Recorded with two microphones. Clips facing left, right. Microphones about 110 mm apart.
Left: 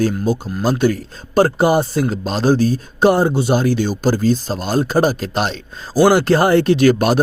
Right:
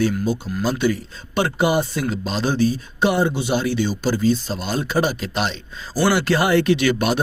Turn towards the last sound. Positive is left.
turn(degrees=45)  # may be behind; listen again after turning